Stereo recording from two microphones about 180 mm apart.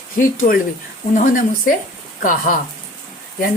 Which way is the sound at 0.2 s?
50° left (ahead or behind).